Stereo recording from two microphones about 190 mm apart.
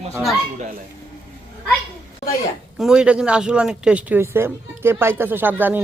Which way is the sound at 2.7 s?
5° right (ahead or behind).